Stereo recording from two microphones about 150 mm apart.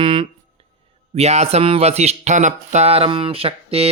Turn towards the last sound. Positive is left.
turn(degrees=-40)  # may be behind; listen again after turning